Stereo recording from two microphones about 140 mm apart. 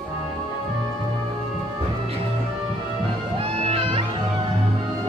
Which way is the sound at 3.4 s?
45° right (ahead or behind).